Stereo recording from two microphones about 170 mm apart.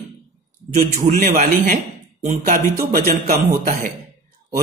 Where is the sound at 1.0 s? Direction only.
55° right (ahead or behind).